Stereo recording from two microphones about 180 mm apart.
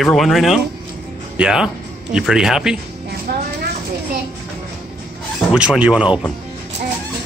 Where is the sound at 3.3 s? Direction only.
60° right (ahead or behind).